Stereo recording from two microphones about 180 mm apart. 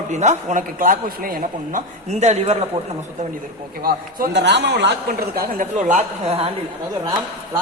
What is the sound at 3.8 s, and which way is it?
Speech, 55° right (ahead or behind).